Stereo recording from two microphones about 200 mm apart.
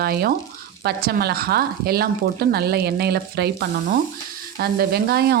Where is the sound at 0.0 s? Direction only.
50° right (ahead or behind).